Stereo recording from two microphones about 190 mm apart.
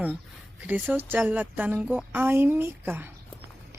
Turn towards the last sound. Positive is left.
turn(degrees=-10)  # may be behind; listen again after turning